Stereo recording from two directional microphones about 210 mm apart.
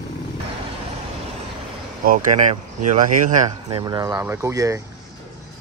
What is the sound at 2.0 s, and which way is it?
Speech, 40° right (ahead or behind).